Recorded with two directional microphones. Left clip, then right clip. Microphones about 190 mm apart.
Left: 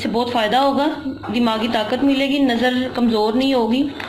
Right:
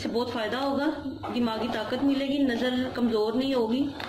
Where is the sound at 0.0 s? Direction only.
35° left (ahead or behind).